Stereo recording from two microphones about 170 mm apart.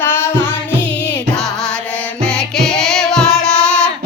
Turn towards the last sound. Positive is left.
turn(degrees=5)  # may be behind; listen again after turning